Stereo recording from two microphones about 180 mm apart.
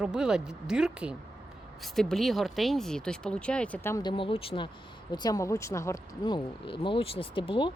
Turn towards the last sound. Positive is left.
turn(degrees=30)  # may be behind; listen again after turning